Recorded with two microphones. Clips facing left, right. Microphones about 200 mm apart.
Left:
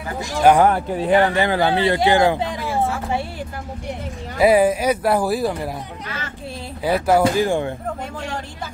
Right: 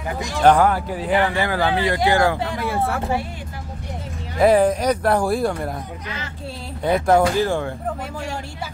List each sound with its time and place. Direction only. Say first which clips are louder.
0.6 s speech: left 2 dB; 25° left (ahead or behind)
2.6 s a sound: right 1 dB; 60° right (ahead or behind)
4.4 s speech: even; 5° left (ahead or behind)
6.8 s speech: even; 5° left (ahead or behind)